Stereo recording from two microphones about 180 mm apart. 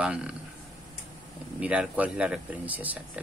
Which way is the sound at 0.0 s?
5° right (ahead or behind).